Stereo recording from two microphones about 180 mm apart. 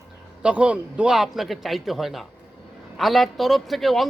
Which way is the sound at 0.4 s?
5° right (ahead or behind).